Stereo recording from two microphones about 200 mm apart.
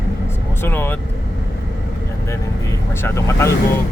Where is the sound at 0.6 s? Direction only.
10° left (ahead or behind).